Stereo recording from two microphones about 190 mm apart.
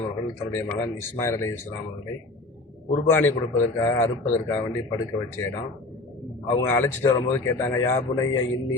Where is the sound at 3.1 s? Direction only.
10° left (ahead or behind).